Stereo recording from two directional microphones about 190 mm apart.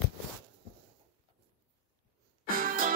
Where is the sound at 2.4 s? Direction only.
50° right (ahead or behind).